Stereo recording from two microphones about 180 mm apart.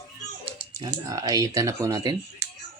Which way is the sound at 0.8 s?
20° right (ahead or behind).